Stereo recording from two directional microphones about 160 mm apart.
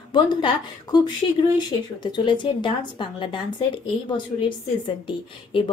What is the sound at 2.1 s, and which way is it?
A woman's voice, 30° left (ahead or behind).